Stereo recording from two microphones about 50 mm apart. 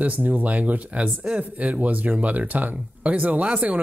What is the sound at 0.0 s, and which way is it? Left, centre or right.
Speech, right.